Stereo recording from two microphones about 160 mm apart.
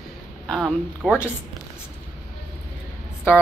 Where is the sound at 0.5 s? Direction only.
Centre (ahead or behind).